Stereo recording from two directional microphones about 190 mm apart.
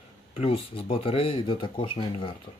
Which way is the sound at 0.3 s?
30° left (ahead or behind).